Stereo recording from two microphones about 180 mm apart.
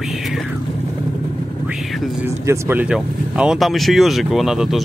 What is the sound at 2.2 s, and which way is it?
Speech, 15° right (ahead or behind).